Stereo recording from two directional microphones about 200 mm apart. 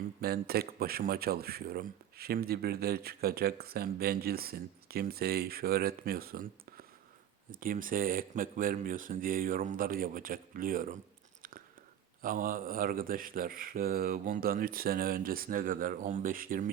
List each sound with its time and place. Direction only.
0.2 s speech: 50° right (ahead or behind)
12.2 s speech: 45° right (ahead or behind)